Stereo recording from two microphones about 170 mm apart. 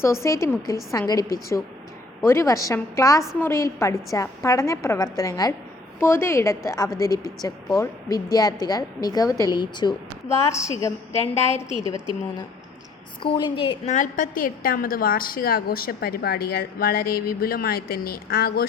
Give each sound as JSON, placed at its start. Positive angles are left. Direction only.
{"t": 0.0, "sound": "a woman's voice", "side_deg": 15}
{"t": 13.2, "sound": "a woman's voice", "side_deg": 30}
{"t": 13.9, "sound": "a woman's voice", "side_deg": 50}